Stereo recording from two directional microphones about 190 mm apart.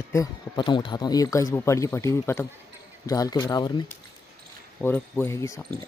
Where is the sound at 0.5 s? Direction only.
25° left (ahead or behind).